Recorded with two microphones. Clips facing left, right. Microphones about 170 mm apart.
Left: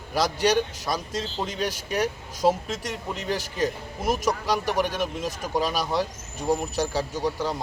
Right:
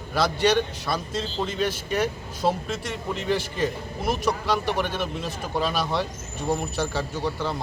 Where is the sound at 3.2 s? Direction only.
40° left (ahead or behind).